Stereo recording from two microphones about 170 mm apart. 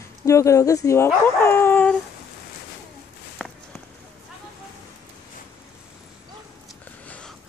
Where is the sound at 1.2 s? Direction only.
15° left (ahead or behind).